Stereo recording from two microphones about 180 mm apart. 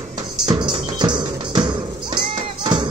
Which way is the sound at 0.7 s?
25° right (ahead or behind).